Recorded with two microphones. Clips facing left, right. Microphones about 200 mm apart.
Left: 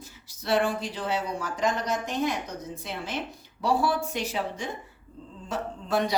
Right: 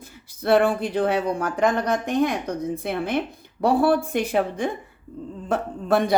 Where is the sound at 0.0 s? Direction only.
55° right (ahead or behind).